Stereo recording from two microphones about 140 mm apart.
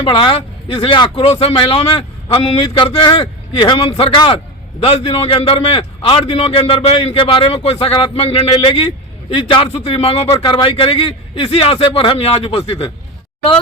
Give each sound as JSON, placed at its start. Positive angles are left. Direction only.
{"t": 0.0, "sound": "speech", "side_deg": 40}